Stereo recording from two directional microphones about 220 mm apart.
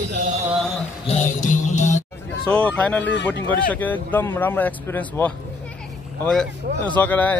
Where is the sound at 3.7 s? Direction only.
5° left (ahead or behind).